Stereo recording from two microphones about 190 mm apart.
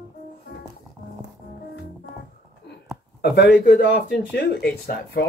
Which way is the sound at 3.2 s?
60° left (ahead or behind).